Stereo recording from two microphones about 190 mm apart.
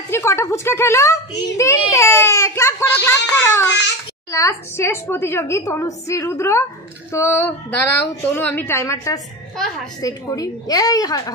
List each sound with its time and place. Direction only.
0.1 s a woman's voice: 15° left (ahead or behind)